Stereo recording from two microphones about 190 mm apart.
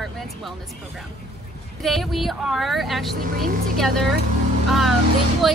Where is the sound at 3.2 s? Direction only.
45° right (ahead or behind).